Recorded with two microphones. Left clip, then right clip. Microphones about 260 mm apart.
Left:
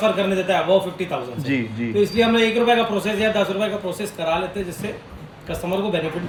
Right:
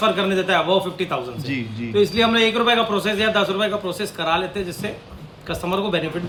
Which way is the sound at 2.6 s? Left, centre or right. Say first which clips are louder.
Even; centre.